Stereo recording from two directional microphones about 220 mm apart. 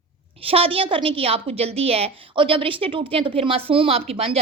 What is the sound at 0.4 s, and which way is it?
A woman's voice, 25° right (ahead or behind).